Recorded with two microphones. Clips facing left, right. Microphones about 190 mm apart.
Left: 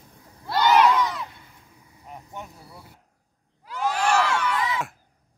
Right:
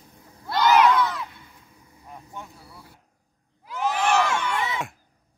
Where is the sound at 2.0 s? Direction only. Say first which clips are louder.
Left 2 dB; 20° left (ahead or behind).